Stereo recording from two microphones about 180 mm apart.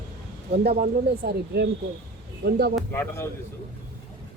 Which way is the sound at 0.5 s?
60° right (ahead or behind).